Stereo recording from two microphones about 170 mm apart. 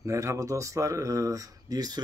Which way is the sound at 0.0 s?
15° right (ahead or behind).